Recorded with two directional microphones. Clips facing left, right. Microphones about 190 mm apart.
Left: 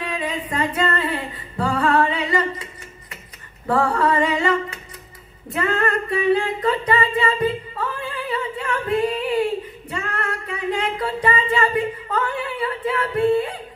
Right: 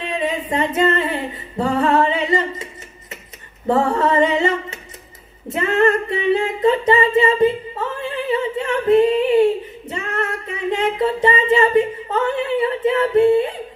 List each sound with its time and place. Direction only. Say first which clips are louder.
0.0 s female singing: right 4 dB; 25° right (ahead or behind)
3.6 s singing: right 2 dB; 25° right (ahead or behind)